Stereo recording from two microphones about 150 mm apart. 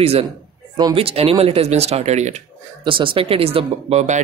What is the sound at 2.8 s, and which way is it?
Speech, 35° right (ahead or behind).